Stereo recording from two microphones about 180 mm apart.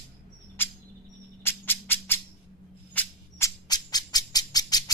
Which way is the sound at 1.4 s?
10° left (ahead or behind).